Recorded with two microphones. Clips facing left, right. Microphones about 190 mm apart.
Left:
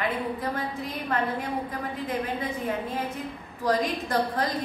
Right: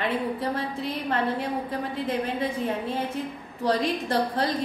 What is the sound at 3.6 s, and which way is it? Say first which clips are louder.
Speech: right 1 dB; 30° right (ahead or behind).